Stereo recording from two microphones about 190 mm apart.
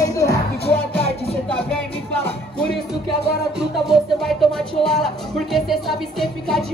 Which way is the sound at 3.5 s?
Centre (ahead or behind).